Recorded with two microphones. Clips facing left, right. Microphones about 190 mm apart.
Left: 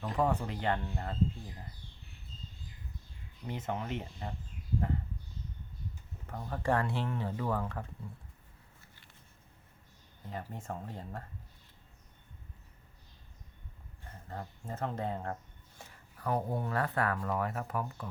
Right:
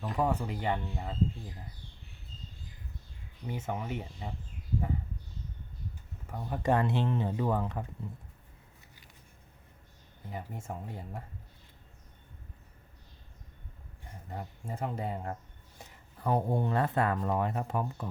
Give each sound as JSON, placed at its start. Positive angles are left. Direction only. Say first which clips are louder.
{"t": 0.0, "sound": "speech", "louder": "right 1 dB", "side_deg": -5}
{"t": 3.5, "sound": "speech", "louder": "right 1 dB", "side_deg": -10}
{"t": 6.2, "sound": "speech", "louder": "right 3 dB", "side_deg": -10}
{"t": 10.2, "sound": "speech", "louder": "even", "side_deg": -10}
{"t": 14.0, "sound": "speech", "louder": "right 1 dB", "side_deg": -15}
{"t": 15.8, "sound": "speech", "louder": "right 3 dB", "side_deg": -25}